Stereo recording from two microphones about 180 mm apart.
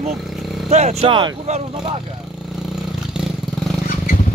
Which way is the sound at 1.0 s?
30° right (ahead or behind).